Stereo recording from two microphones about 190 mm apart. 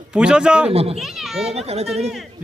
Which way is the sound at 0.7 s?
30° right (ahead or behind).